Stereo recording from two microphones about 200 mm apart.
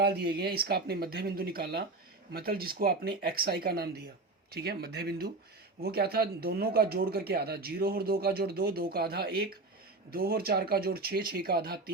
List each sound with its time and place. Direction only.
0.0 s speech: 50° right (ahead or behind)